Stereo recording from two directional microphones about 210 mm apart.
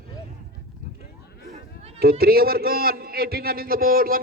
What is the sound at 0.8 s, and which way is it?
Horse, 40° left (ahead or behind).